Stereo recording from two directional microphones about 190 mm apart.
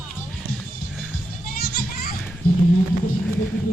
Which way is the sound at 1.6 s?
55° left (ahead or behind).